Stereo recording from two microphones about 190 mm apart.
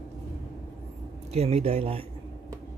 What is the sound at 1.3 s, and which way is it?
Speech, 35° right (ahead or behind).